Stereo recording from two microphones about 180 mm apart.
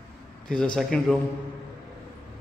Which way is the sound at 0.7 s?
Centre (ahead or behind).